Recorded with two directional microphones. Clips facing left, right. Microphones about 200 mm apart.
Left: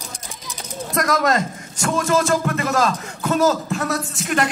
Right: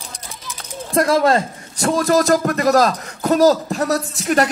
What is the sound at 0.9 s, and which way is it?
A man's voice, 30° right (ahead or behind).